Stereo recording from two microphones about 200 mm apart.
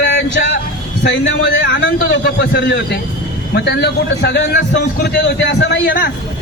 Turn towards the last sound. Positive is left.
turn(degrees=45)  # may be behind; listen again after turning